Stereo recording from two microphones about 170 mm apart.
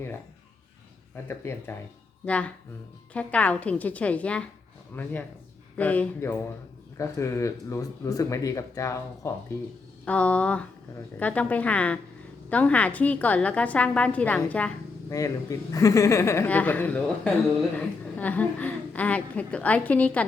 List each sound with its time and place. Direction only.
1.1 s a woman's voice: 15° left (ahead or behind)
15.1 s a woman's voice: 20° left (ahead or behind)